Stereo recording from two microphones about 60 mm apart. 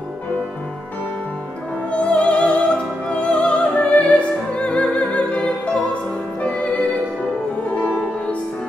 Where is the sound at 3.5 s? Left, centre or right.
Centre.